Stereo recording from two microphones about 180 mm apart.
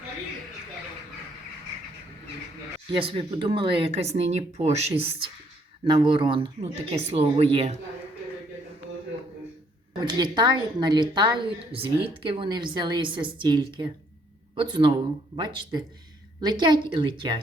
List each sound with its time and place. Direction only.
3.0 s speech: 30° right (ahead or behind)
10.0 s speech: 25° right (ahead or behind)